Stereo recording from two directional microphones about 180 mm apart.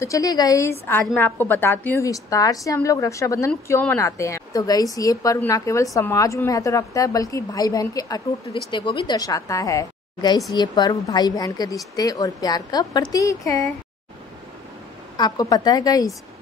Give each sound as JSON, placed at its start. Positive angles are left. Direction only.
{"t": 0.0, "sound": "a woman's voice", "side_deg": 20}
{"t": 15.1, "sound": "a woman's voice", "side_deg": 20}